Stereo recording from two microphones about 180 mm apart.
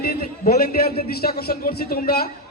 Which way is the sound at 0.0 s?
55° left (ahead or behind).